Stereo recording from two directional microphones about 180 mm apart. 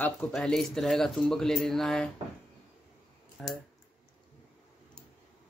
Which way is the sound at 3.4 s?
Centre (ahead or behind).